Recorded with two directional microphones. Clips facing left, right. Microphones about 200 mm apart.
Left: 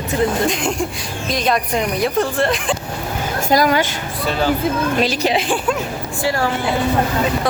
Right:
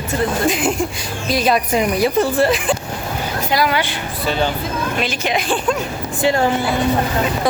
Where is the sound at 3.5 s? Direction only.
45° left (ahead or behind).